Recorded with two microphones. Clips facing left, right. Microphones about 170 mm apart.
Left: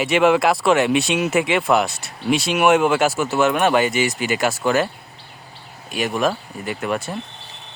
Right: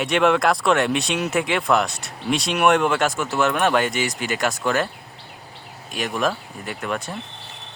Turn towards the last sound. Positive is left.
turn(degrees=5)  # may be behind; listen again after turning